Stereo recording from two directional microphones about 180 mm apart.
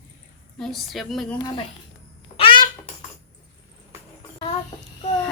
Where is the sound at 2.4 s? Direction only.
30° left (ahead or behind).